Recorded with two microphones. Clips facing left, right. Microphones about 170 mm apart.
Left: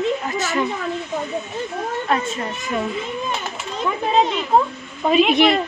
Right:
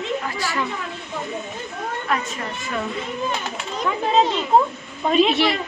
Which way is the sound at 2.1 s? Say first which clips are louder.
Left 3 dB; 30° left (ahead or behind).